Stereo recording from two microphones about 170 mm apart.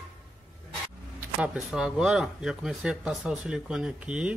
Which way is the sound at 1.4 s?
5° right (ahead or behind).